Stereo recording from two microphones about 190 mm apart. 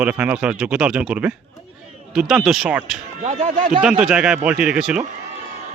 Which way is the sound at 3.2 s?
35° right (ahead or behind).